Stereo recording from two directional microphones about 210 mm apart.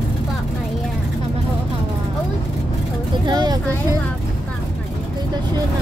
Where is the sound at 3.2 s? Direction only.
20° right (ahead or behind).